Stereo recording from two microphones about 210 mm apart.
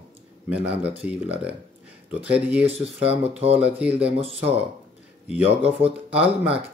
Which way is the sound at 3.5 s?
5° right (ahead or behind).